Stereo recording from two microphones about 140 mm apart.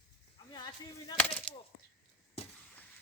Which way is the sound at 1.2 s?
10° left (ahead or behind).